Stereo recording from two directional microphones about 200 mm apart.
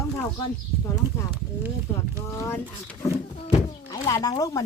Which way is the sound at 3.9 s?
20° left (ahead or behind).